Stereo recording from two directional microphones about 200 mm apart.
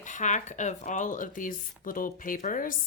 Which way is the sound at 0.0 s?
40° left (ahead or behind).